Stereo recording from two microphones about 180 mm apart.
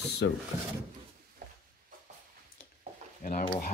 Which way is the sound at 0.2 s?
75° left (ahead or behind).